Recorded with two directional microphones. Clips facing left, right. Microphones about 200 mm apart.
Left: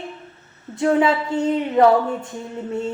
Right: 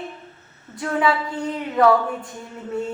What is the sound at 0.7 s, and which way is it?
A woman's voice, 25° left (ahead or behind).